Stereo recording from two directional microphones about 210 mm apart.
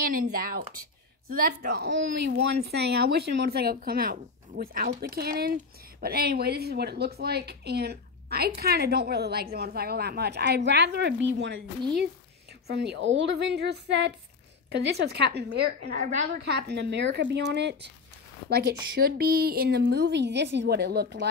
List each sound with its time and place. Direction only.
0.0 s speech: 45° right (ahead or behind)
12.6 s speech: 50° right (ahead or behind)
16.0 s a woman's voice: 35° right (ahead or behind)
16.4 s speech: 55° right (ahead or behind)